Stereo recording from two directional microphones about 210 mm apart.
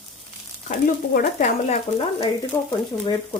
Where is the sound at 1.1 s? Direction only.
35° left (ahead or behind).